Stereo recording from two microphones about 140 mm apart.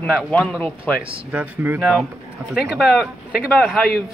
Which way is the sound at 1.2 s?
10° right (ahead or behind).